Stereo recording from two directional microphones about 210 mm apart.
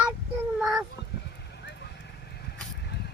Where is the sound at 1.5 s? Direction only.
50° left (ahead or behind).